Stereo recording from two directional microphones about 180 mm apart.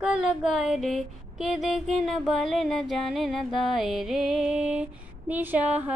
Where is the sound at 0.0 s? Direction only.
5° right (ahead or behind).